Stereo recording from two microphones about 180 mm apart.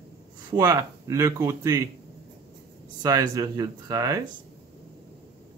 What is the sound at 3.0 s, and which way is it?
Speech, 20° right (ahead or behind).